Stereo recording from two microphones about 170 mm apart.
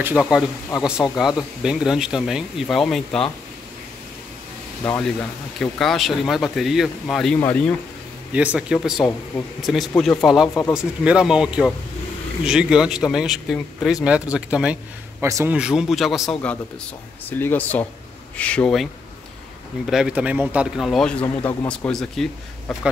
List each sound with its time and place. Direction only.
0.2 s speech: 5° right (ahead or behind)
4.8 s a man's voice: 10° left (ahead or behind); by 15.2 s 5° right (ahead or behind)
15.2 s a man's voice: 15° right (ahead or behind)
15.5 s speech: 5° right (ahead or behind)
17.3 s speech: 10° left (ahead or behind)
19.9 s speech: 5° right (ahead or behind)